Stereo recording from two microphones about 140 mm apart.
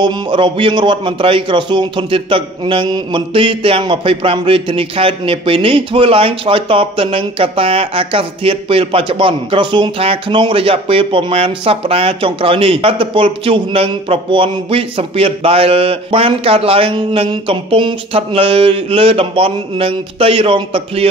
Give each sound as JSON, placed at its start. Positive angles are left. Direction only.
{"t": 0.0, "sound": "speech", "side_deg": -35}